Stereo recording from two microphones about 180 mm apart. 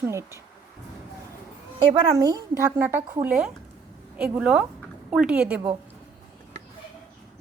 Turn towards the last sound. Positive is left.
turn(degrees=-5)  # may be behind; listen again after turning